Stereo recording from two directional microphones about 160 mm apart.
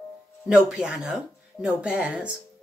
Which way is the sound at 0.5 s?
5° right (ahead or behind).